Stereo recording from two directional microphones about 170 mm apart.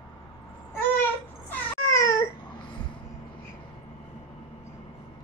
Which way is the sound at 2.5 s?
30° left (ahead or behind).